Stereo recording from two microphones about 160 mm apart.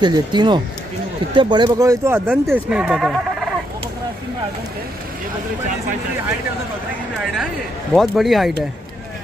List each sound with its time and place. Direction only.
0.0 s speech: 25° right (ahead or behind); by 3.4 s centre (ahead or behind)
7.9 s speech: centre (ahead or behind)